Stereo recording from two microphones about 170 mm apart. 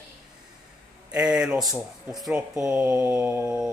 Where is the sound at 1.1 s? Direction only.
5° right (ahead or behind).